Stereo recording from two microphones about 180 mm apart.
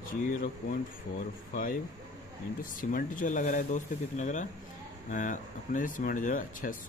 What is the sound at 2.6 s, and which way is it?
Speech, 50° left (ahead or behind).